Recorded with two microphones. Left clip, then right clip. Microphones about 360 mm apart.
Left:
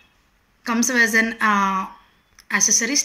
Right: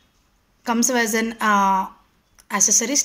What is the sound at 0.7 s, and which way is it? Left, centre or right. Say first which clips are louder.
A woman's voice: left 2 dB; right.